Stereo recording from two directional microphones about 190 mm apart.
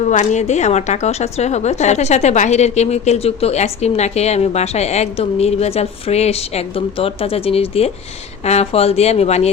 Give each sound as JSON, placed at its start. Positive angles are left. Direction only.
{"t": 0.0, "sound": "a woman's voice", "side_deg": 40}